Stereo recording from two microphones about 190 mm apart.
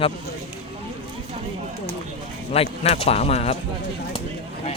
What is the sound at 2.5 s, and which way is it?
Speech, 30° left (ahead or behind).